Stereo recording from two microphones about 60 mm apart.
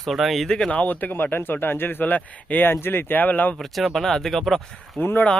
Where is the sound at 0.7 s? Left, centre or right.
Left.